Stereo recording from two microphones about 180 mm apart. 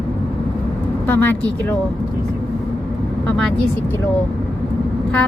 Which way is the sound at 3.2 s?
5° left (ahead or behind).